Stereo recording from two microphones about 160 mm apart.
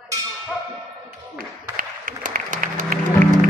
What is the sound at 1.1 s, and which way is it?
Music, 65° right (ahead or behind).